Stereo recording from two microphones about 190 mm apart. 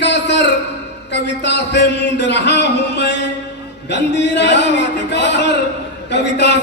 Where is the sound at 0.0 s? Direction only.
65° left (ahead or behind).